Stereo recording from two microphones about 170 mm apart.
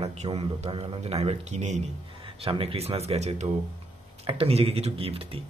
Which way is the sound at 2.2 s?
30° right (ahead or behind).